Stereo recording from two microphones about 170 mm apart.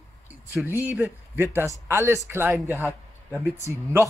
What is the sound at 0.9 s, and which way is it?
A man's voice, 15° right (ahead or behind).